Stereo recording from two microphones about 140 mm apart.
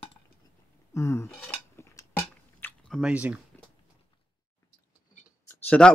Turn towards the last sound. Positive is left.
turn(degrees=10)  # may be behind; listen again after turning